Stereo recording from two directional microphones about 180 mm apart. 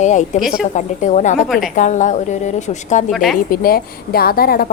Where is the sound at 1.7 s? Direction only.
45° left (ahead or behind).